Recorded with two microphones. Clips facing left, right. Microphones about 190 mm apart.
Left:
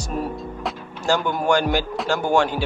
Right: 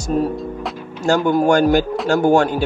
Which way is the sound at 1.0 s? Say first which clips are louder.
Right 6 dB; 45° right (ahead or behind).